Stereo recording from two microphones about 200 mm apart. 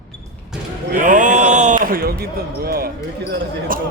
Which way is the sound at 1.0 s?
40° right (ahead or behind).